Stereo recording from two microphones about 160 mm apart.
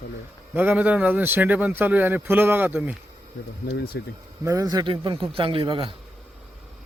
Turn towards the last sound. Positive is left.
turn(degrees=-35)  # may be behind; listen again after turning